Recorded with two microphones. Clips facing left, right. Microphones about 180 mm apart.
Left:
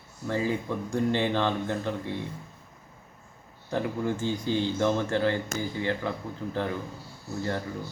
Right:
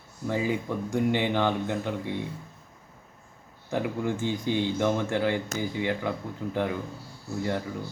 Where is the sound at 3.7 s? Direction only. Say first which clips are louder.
Even; 10° right (ahead or behind).